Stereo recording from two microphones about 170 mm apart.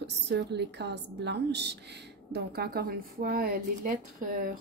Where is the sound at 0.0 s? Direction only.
85° right.